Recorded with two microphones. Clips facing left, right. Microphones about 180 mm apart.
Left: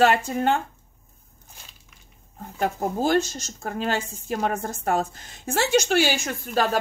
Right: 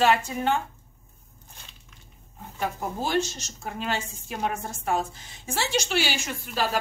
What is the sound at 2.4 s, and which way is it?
A woman's voice, 45° left (ahead or behind).